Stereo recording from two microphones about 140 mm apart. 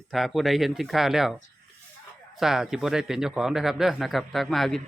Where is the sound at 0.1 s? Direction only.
Centre (ahead or behind).